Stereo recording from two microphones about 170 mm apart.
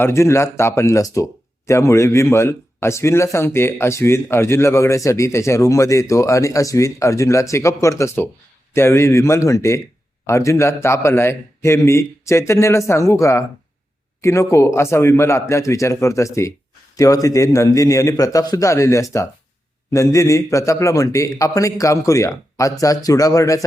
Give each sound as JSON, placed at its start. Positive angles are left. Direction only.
{"t": 0.0, "sound": "a man's voice", "side_deg": 15}